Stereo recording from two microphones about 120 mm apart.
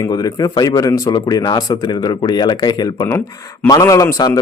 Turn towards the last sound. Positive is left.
turn(degrees=30)  # may be behind; listen again after turning